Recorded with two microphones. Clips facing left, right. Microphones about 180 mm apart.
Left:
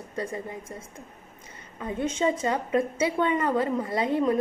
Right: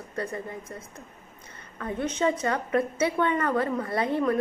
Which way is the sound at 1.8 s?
10° left (ahead or behind).